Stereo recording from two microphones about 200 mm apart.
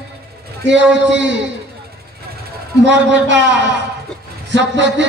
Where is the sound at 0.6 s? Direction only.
65° right (ahead or behind).